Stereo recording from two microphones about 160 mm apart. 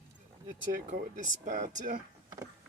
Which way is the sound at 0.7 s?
60° right (ahead or behind).